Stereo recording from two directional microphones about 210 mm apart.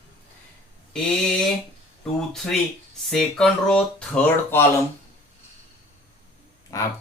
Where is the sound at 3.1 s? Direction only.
Centre (ahead or behind).